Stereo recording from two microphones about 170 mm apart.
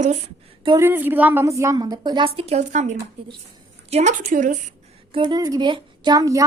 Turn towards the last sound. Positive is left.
turn(degrees=-20)  # may be behind; listen again after turning